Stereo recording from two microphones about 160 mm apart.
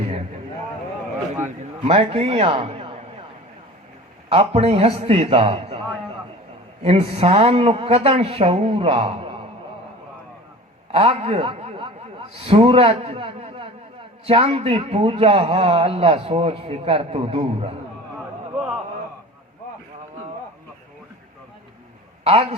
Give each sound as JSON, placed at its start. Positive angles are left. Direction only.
{"t": 1.5, "sound": "a man's voice", "side_deg": -40}
{"t": 4.3, "sound": "a man's voice", "side_deg": -40}
{"t": 6.8, "sound": "a man's voice", "side_deg": -40}
{"t": 10.9, "sound": "a man's voice", "side_deg": -40}
{"t": 22.2, "sound": "a man's voice", "side_deg": -40}